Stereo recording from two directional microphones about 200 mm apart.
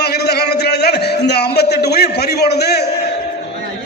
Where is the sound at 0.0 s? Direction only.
55° left (ahead or behind).